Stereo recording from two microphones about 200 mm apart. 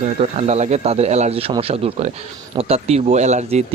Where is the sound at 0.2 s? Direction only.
35° right (ahead or behind).